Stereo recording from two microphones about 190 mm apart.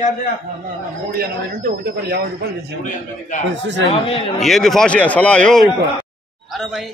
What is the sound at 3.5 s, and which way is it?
Speech, 65° right (ahead or behind).